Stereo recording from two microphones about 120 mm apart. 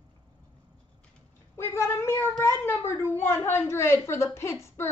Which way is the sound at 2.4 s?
20° left (ahead or behind).